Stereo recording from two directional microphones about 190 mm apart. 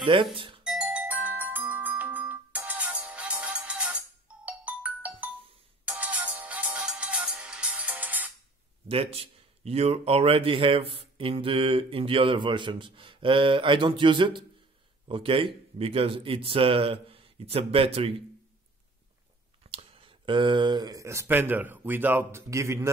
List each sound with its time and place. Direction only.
0.0 s speech: 25° right (ahead or behind)
0.7 s music: 5° right (ahead or behind)
8.8 s a man's voice: 30° right (ahead or behind)
19.7 s speech: 30° right (ahead or behind); by 22.8 s 15° right (ahead or behind)